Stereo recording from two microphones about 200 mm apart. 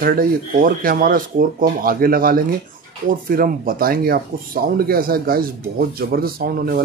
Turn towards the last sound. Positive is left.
turn(degrees=-50)  # may be behind; listen again after turning